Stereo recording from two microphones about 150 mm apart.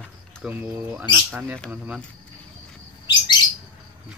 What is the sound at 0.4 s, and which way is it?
Speech, 10° right (ahead or behind).